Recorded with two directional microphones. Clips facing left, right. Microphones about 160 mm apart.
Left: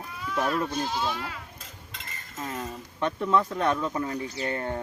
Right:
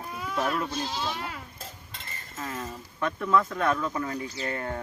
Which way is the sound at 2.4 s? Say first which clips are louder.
Left 1 dB; 30° left (ahead or behind).